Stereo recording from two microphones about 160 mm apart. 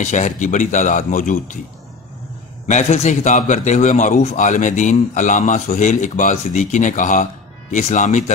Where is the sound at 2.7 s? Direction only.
45° left (ahead or behind).